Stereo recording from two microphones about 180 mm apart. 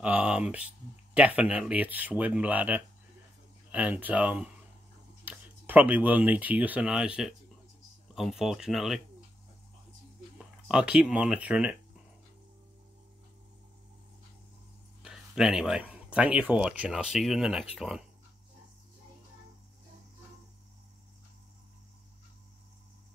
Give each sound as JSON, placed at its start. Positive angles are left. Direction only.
{"t": 0.0, "sound": "speech", "side_deg": -5}
{"t": 10.3, "sound": "speech", "side_deg": -5}
{"t": 15.0, "sound": "speech", "side_deg": -5}